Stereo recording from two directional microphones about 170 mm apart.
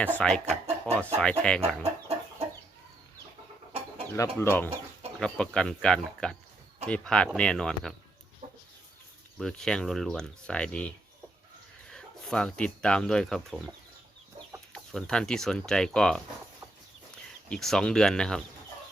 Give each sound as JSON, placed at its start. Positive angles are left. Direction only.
{"t": 0.0, "sound": "speech", "side_deg": 5}
{"t": 2.1, "sound": "chicken", "side_deg": -40}
{"t": 4.1, "sound": "speech", "side_deg": 15}
{"t": 8.4, "sound": "chicken", "side_deg": -40}
{"t": 9.4, "sound": "speech", "side_deg": 5}
{"t": 17.5, "sound": "speech", "side_deg": 5}